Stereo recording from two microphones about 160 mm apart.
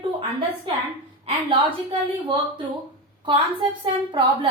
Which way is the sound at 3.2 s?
30° right (ahead or behind).